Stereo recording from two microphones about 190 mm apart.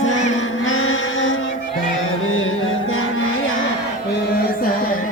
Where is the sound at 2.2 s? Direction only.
90° left.